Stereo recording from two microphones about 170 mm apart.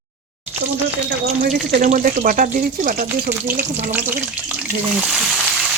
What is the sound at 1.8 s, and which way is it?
Speech, 50° right (ahead or behind).